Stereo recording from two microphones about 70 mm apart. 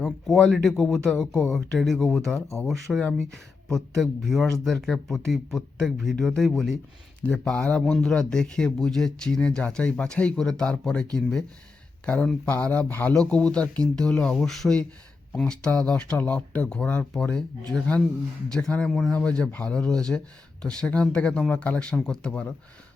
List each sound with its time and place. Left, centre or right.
0.0 s speech: centre
7.3 s speech: centre
14.3 s speech: centre
18.5 s speech: centre